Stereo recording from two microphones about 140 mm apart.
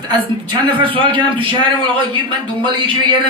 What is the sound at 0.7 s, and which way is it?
A man's voice, 40° right (ahead or behind).